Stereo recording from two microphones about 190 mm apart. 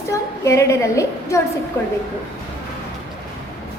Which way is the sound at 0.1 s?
15° left (ahead or behind).